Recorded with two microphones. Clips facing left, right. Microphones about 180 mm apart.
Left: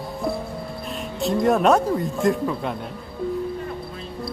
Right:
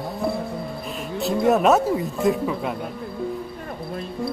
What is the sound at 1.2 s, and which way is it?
Speech, 5° right (ahead or behind).